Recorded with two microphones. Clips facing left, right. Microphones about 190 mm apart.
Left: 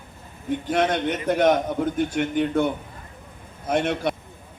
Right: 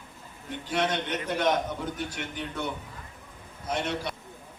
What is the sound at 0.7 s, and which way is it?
A man's voice, 50° left (ahead or behind).